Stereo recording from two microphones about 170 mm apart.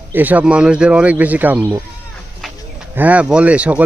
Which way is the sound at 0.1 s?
10° right (ahead or behind).